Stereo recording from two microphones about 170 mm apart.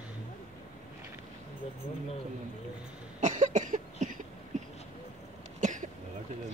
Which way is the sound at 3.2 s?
45° right (ahead or behind).